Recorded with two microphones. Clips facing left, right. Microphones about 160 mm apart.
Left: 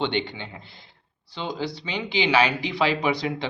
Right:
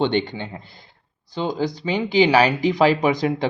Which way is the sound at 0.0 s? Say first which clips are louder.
Right 6 dB; 45° right (ahead or behind).